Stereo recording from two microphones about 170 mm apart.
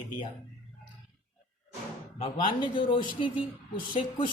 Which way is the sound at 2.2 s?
30° left (ahead or behind).